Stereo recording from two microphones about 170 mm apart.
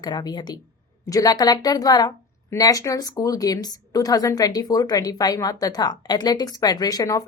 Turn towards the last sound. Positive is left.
turn(degrees=20)  # may be behind; listen again after turning